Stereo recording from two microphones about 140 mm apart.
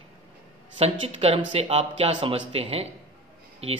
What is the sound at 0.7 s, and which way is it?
A man's voice, 40° right (ahead or behind).